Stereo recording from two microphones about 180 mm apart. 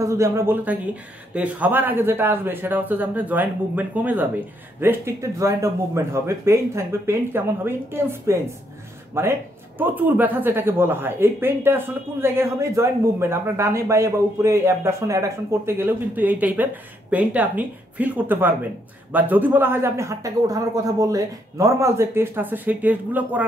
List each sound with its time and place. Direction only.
0.0 s speech: 15° right (ahead or behind)